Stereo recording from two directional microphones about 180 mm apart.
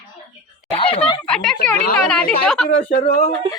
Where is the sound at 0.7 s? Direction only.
30° left (ahead or behind).